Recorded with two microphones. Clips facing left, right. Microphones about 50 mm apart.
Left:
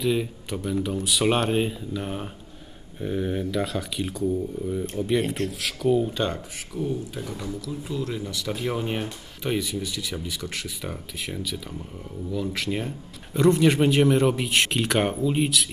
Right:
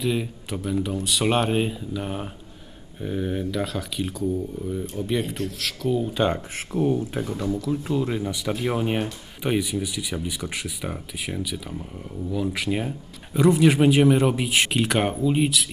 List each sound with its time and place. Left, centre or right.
0.0 s speech: centre
6.1 s speech: centre
6.7 s speech: right
7.8 s speech: right; by 15.6 s centre